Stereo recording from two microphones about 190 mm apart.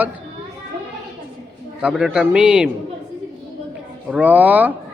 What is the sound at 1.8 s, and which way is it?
Speech, 5° right (ahead or behind).